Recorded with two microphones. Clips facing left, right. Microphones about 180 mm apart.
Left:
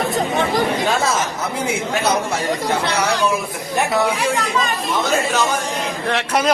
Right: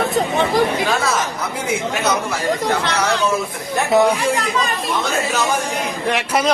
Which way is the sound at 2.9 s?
10° left (ahead or behind).